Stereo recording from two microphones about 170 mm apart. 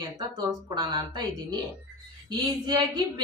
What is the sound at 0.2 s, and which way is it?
A woman's voice, 25° right (ahead or behind).